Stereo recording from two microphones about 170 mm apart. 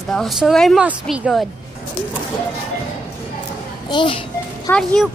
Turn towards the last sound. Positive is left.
turn(degrees=5)  # may be behind; listen again after turning